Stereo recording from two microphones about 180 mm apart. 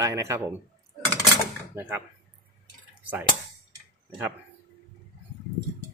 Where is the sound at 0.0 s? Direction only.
15° right (ahead or behind).